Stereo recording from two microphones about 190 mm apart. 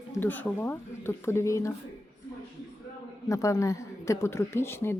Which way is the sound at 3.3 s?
15° left (ahead or behind).